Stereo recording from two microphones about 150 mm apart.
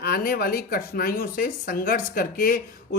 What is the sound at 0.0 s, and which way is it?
Speech, 85° left.